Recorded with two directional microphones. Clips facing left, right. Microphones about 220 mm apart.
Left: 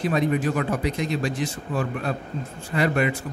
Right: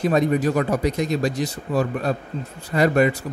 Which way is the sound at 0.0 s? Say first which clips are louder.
Right 3 dB; 40° right (ahead or behind).